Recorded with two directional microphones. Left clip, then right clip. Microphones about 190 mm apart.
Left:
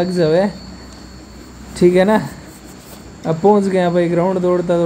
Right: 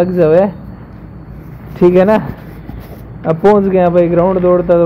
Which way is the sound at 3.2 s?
Centre (ahead or behind).